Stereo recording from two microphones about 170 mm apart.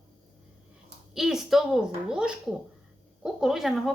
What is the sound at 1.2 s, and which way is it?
A woman's voice, centre (ahead or behind).